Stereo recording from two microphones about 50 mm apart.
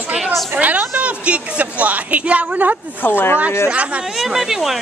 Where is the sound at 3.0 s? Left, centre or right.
Left.